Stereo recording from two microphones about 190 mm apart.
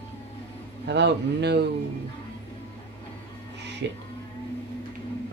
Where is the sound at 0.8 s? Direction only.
65° right (ahead or behind).